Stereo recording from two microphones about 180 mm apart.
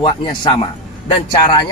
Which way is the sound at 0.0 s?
25° left (ahead or behind).